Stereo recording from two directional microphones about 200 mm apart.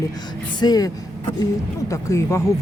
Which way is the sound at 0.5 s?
20° left (ahead or behind).